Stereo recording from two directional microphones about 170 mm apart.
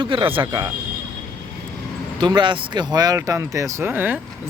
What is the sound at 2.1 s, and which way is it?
Speech, 25° right (ahead or behind).